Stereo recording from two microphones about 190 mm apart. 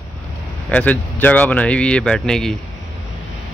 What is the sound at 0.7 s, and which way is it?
Speech, 5° left (ahead or behind).